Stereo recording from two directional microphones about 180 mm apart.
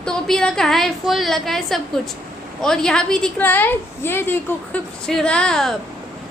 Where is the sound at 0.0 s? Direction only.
5° left (ahead or behind).